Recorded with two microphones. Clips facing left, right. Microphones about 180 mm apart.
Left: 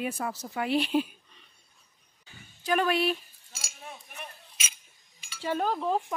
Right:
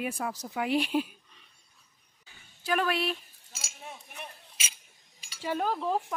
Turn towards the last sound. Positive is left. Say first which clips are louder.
# left 1 dB
turn(degrees=-5)  # may be behind; listen again after turning